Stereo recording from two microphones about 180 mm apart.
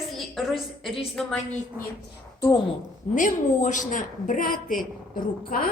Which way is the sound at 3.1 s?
45° left (ahead or behind).